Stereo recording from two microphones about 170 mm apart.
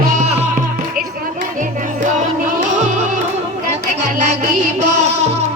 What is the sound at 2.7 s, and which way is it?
Music, 45° right (ahead or behind).